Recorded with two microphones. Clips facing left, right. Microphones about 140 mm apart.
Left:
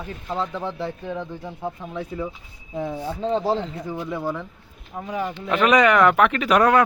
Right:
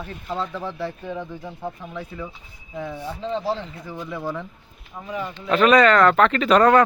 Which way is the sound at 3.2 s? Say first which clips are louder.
Left 4 dB; 40° left (ahead or behind).